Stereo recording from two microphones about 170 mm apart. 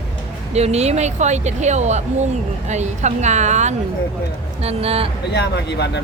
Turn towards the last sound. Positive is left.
turn(degrees=80)